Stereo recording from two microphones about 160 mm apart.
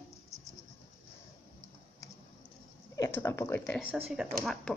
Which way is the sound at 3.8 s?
5° right (ahead or behind).